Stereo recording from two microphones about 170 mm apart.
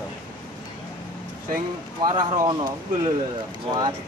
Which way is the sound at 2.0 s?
25° right (ahead or behind).